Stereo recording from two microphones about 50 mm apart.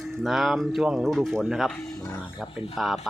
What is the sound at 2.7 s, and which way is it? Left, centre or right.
Speech, centre.